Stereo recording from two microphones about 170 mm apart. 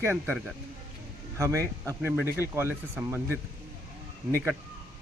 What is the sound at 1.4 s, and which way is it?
Speech, 15° right (ahead or behind).